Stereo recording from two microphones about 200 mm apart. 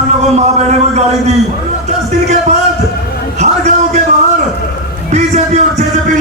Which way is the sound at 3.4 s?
35° right (ahead or behind).